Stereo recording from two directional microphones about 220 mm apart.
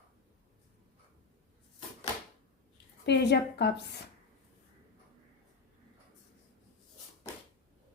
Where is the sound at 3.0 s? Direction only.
50° left (ahead or behind).